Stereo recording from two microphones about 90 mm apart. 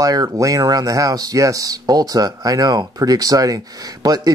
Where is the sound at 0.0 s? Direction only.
40° right (ahead or behind).